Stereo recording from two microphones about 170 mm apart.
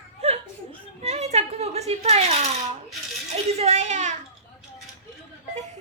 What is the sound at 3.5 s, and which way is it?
Speech, 40° right (ahead or behind).